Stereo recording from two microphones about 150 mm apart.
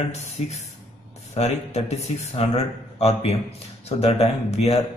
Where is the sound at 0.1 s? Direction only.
50° left (ahead or behind).